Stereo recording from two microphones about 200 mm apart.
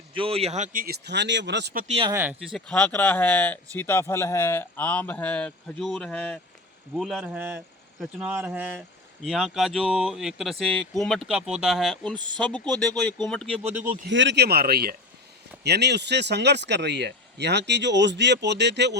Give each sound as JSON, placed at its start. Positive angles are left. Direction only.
{"t": 0.1, "sound": "speech", "side_deg": -25}
{"t": 1.9, "sound": "speech", "side_deg": -25}
{"t": 2.1, "sound": "speech", "side_deg": -5}
{"t": 12.1, "sound": "speech", "side_deg": -20}
{"t": 12.4, "sound": "speech", "side_deg": 5}
{"t": 14.1, "sound": "speech", "side_deg": -65}